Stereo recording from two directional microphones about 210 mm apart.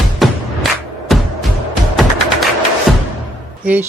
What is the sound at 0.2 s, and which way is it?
Music, centre (ahead or behind).